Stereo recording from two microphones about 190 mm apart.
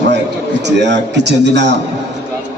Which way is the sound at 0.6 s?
65° right (ahead or behind).